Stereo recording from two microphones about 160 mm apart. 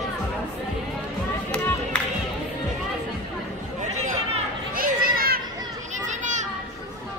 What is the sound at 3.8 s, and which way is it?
Chatter, 45° right (ahead or behind).